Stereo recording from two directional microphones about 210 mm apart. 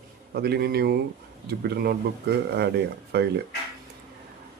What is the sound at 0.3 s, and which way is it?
Speech, 50° right (ahead or behind).